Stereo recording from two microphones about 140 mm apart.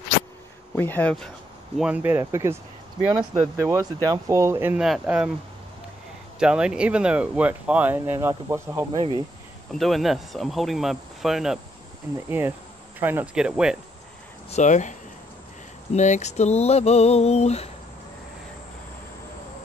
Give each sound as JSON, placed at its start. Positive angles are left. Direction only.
{"t": 0.7, "sound": "speech", "side_deg": 15}
{"t": 1.8, "sound": "speech", "side_deg": -10}
{"t": 4.7, "sound": "speech", "side_deg": -5}
{"t": 6.4, "sound": "speech", "side_deg": -5}
{"t": 9.8, "sound": "speech", "side_deg": 0}
{"t": 12.3, "sound": "speech", "side_deg": -15}
{"t": 14.5, "sound": "speech", "side_deg": 60}
{"t": 15.9, "sound": "a sound", "side_deg": 55}